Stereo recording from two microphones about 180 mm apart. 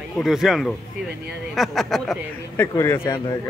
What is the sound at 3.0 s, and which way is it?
Speech, 20° left (ahead or behind).